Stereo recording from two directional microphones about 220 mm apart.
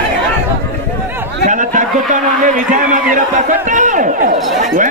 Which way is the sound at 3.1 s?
35° right (ahead or behind).